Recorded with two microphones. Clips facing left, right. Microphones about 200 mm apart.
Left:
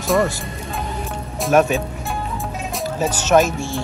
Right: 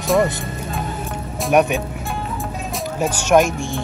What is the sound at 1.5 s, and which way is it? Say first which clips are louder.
Speech: even; 15° right (ahead or behind).